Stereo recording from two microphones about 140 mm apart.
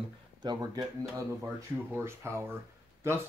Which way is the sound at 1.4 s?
15° right (ahead or behind).